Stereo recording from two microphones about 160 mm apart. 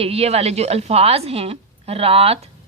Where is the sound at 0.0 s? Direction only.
40° right (ahead or behind).